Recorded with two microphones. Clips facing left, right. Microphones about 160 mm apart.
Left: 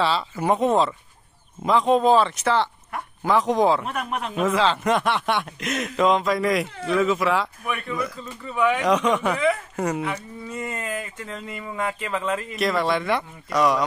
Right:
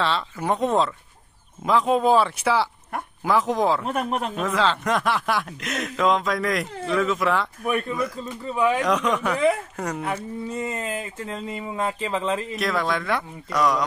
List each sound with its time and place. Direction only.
0.0 s speech: 5° left (ahead or behind)
3.8 s speech: 40° right (ahead or behind)
4.4 s speech: 5° left (ahead or behind)
8.5 s speech: 30° right (ahead or behind)
8.8 s speech: centre (ahead or behind)
10.5 s speech: 30° right (ahead or behind)
12.5 s speech: centre (ahead or behind)